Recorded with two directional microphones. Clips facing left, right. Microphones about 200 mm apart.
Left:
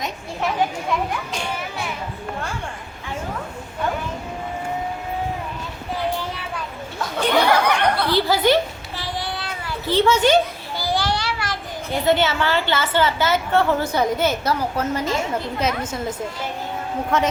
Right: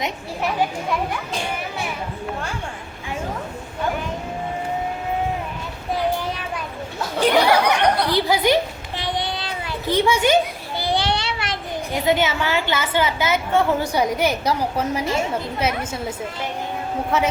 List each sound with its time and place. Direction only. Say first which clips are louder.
7.4 s a woman's voice: right 1 dB; 15° right (ahead or behind)
9.0 s child singing: right 3 dB; 20° right (ahead or behind)
10.8 s child singing: right 1 dB; 20° right (ahead or behind)
12.0 s a woman's voice: left 1 dB; 15° right (ahead or behind)